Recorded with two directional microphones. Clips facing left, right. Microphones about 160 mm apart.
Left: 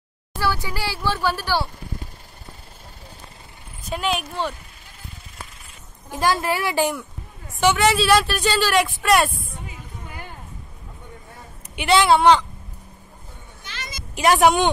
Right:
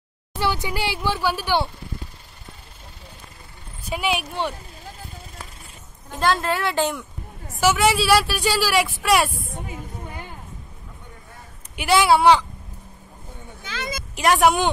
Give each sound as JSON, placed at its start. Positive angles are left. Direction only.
{"t": 0.4, "sound": "speech", "side_deg": -20}
{"t": 3.8, "sound": "a woman's voice", "side_deg": -10}
{"t": 6.0, "sound": "a woman's voice", "side_deg": 10}
{"t": 11.7, "sound": "a woman's voice", "side_deg": -5}
{"t": 14.1, "sound": "a woman's voice", "side_deg": 0}